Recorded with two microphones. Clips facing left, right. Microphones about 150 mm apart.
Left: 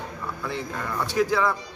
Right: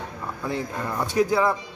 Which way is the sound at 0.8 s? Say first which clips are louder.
Right 1 dB; 20° right (ahead or behind).